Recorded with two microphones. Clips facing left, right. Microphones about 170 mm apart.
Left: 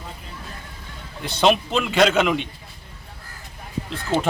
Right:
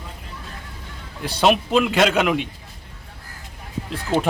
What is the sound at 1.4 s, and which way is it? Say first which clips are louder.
Speech: right 2 dB; 5° right (ahead or behind).